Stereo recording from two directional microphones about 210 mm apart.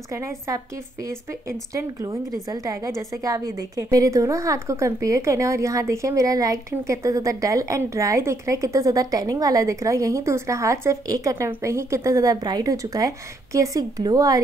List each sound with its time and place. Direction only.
0.1 s a woman's voice: 15° right (ahead or behind)